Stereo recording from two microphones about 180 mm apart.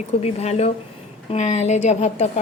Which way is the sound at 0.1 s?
35° left (ahead or behind).